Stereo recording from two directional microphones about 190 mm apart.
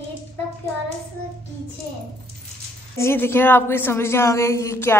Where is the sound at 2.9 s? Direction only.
10° left (ahead or behind).